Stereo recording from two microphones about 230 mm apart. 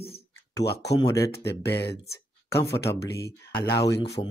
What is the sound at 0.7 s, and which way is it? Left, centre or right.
Speech, left.